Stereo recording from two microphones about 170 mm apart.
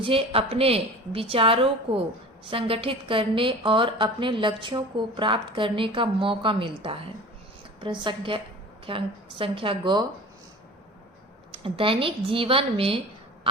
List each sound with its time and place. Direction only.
0.0 s a woman's voice: 30° right (ahead or behind)
11.5 s a woman's voice: 30° right (ahead or behind)